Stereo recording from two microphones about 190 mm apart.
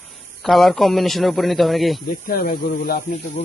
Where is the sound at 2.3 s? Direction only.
50° left (ahead or behind).